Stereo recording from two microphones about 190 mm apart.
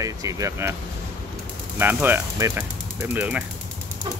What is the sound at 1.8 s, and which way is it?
Speech, 10° right (ahead or behind).